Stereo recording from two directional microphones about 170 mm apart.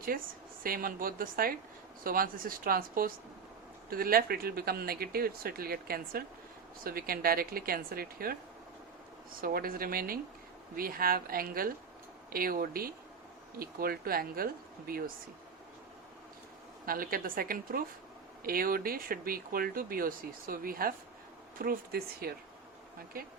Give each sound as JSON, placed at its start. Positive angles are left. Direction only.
{"t": 0.1, "sound": "speech", "side_deg": -60}
{"t": 9.4, "sound": "speech", "side_deg": -60}
{"t": 16.8, "sound": "speech", "side_deg": -55}